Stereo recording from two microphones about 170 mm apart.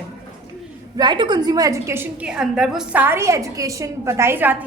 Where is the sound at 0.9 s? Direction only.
25° right (ahead or behind).